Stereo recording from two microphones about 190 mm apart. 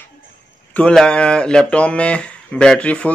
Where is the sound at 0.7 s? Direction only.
5° left (ahead or behind).